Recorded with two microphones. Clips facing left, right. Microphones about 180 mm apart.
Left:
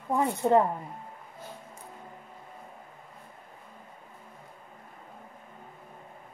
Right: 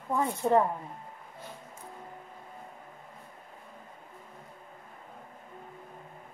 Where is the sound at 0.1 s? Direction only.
20° left (ahead or behind).